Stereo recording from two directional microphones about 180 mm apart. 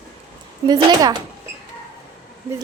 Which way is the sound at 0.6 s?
20° right (ahead or behind).